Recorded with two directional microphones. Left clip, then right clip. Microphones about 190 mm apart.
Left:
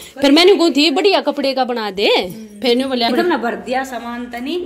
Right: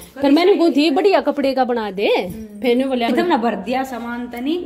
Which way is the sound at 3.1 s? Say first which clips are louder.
Left 1 dB; 30° right (ahead or behind).